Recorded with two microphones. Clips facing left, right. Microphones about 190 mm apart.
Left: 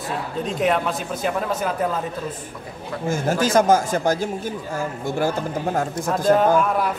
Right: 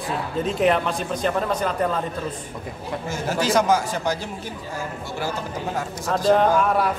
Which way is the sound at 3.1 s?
50° left (ahead or behind).